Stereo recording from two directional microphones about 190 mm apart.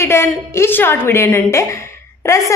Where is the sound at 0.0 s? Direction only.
15° left (ahead or behind).